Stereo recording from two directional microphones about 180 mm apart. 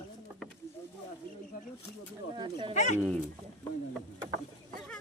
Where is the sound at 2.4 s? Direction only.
25° right (ahead or behind).